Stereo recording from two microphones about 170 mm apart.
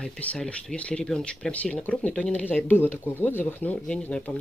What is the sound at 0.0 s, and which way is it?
Speech, 5° left (ahead or behind).